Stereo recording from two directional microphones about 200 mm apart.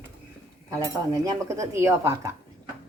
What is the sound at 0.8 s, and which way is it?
Speech, 15° right (ahead or behind).